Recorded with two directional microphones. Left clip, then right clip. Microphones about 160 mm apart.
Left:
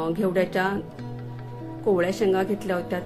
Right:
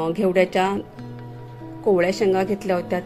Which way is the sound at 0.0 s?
15° right (ahead or behind).